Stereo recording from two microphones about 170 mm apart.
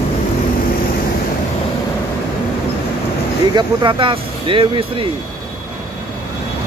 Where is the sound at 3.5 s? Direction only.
25° right (ahead or behind).